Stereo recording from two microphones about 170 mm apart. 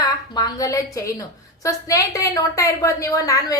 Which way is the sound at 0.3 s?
20° left (ahead or behind).